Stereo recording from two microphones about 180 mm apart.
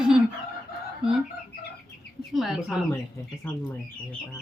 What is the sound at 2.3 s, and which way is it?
Chicken, centre (ahead or behind).